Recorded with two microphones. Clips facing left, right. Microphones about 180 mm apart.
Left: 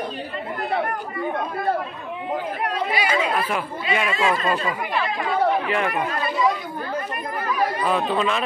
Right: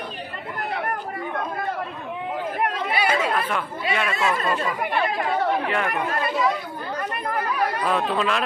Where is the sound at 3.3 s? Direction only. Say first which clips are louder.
Left 1 dB; 5° left (ahead or behind).